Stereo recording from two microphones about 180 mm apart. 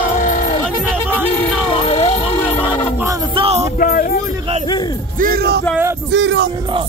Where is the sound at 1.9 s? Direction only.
30° left (ahead or behind).